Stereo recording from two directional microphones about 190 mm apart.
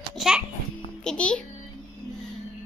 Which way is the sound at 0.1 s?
Centre (ahead or behind).